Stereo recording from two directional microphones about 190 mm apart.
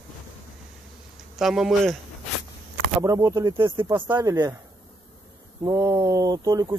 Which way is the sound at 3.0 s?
15° right (ahead or behind).